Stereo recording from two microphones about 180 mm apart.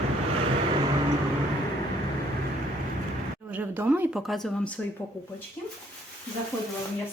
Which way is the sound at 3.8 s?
5° right (ahead or behind).